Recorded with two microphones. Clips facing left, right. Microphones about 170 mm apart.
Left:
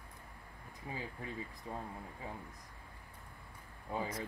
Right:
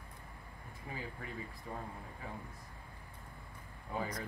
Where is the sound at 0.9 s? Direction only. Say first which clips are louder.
Left 1 dB; 20° left (ahead or behind).